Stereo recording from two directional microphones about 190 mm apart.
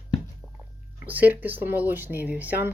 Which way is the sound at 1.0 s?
10° right (ahead or behind).